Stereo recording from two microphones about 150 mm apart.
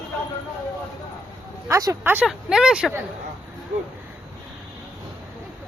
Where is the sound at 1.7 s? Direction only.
20° right (ahead or behind); by 2.9 s 5° right (ahead or behind).